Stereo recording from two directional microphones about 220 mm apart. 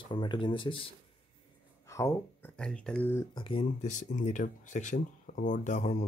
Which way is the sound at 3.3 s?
25° left (ahead or behind).